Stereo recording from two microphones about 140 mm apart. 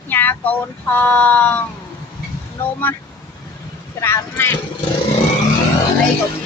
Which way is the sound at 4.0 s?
20° left (ahead or behind).